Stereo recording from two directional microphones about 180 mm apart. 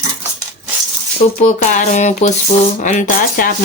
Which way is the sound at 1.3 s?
45° left (ahead or behind).